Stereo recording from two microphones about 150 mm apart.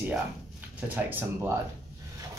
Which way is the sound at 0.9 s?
10° right (ahead or behind).